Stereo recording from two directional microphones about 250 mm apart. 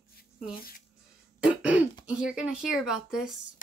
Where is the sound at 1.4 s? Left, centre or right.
Centre.